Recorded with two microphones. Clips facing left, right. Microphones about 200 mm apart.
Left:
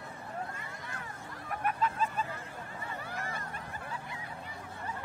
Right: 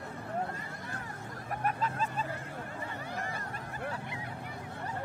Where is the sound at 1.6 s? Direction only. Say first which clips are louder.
Left 1 dB; 40° right (ahead or behind).